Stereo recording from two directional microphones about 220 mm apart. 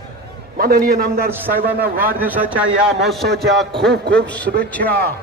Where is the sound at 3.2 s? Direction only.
45° right (ahead or behind).